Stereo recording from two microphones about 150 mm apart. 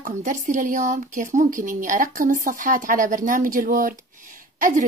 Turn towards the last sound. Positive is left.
turn(degrees=-65)  # may be behind; listen again after turning